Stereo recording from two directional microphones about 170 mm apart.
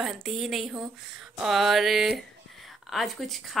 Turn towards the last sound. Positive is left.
turn(degrees=0)  # may be behind; listen again after turning